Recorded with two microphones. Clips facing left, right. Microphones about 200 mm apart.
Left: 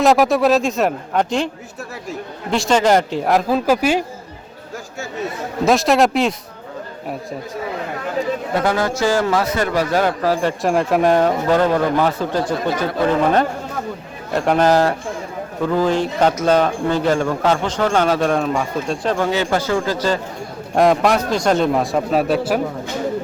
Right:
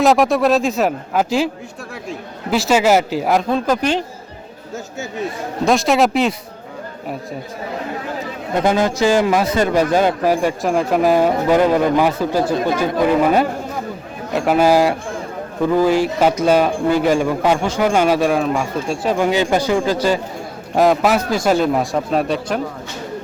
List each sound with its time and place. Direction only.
0.0 s a man's voice: centre (ahead or behind)
2.5 s a man's voice: 5° right (ahead or behind)
5.6 s a man's voice: centre (ahead or behind)
8.6 s a man's voice: 20° right (ahead or behind)
10.6 s a man's voice: centre (ahead or behind); by 20.1 s 15° right (ahead or behind)
20.7 s a man's voice: centre (ahead or behind)